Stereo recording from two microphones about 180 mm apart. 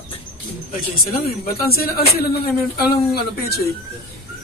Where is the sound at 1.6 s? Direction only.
55° left (ahead or behind).